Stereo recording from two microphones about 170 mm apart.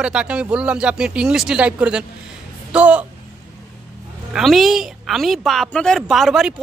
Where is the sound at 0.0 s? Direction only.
5° right (ahead or behind).